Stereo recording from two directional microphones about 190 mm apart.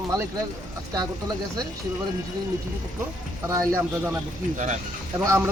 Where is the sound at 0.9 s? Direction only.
20° right (ahead or behind).